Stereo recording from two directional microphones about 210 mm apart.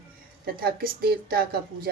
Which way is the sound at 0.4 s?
45° right (ahead or behind).